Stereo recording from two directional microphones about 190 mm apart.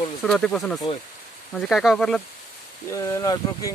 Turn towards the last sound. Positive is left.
turn(degrees=15)  # may be behind; listen again after turning